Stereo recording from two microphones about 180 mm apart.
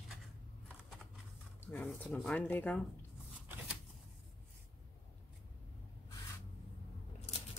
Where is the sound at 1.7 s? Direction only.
5° left (ahead or behind).